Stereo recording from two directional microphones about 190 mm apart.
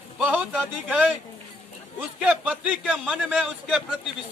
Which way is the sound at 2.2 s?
5° right (ahead or behind).